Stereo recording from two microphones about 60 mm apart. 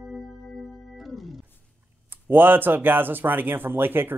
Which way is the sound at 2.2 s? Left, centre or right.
Right.